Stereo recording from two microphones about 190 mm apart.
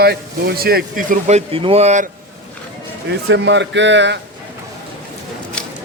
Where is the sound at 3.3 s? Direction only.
70° right (ahead or behind).